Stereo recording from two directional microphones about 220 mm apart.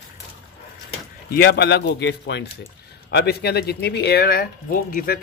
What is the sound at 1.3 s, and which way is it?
Speech, 50° left (ahead or behind).